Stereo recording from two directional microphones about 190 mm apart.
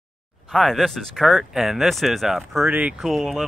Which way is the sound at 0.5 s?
Centre (ahead or behind).